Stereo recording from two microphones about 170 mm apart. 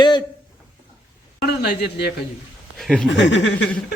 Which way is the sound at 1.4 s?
75° left (ahead or behind).